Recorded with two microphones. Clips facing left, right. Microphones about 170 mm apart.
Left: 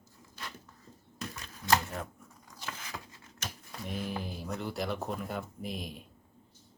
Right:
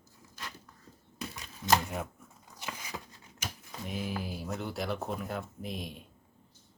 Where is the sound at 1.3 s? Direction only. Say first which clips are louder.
Right 1 dB; 20° right (ahead or behind).